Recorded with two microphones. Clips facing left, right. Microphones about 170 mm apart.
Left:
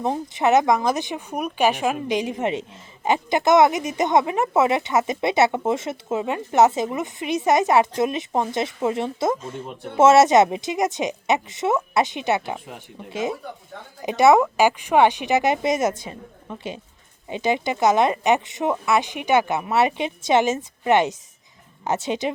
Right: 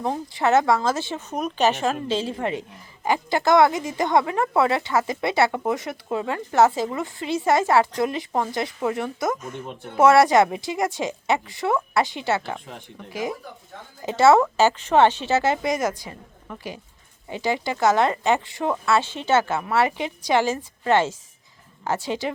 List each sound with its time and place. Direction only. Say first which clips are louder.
0.0 s speech: left 2 dB; 20° left (ahead or behind)
12.5 s a woman's voice: left 1 dB; 5° left (ahead or behind)
13.1 s a woman's voice: left 3 dB; 25° left (ahead or behind)